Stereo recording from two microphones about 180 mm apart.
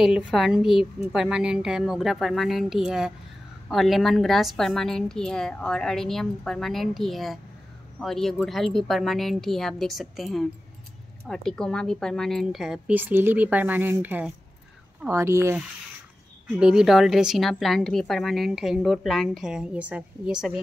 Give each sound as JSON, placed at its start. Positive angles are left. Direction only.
{"t": 0.0, "sound": "a woman's voice", "side_deg": 0}